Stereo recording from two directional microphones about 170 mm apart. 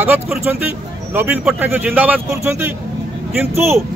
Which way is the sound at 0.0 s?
5° right (ahead or behind).